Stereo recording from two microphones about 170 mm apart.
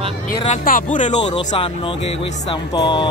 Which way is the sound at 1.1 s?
30° left (ahead or behind).